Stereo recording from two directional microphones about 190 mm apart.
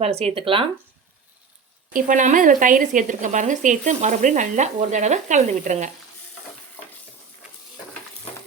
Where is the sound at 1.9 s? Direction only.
45° right (ahead or behind).